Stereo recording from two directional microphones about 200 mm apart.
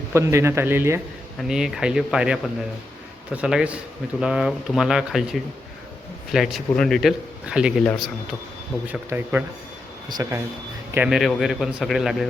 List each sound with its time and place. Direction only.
0.1 s speech: 15° right (ahead or behind)
10.9 s speech: 5° right (ahead or behind)